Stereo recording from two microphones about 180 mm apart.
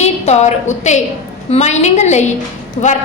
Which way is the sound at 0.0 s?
40° left (ahead or behind).